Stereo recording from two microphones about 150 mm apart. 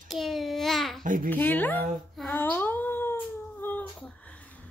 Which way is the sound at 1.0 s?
65° right (ahead or behind).